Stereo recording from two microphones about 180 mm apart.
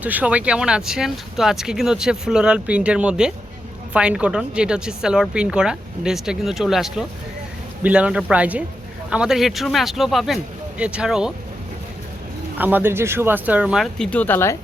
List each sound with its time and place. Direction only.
0.0 s speech: 10° right (ahead or behind)
12.5 s speech: 10° right (ahead or behind)
14.0 s speech: 10° left (ahead or behind)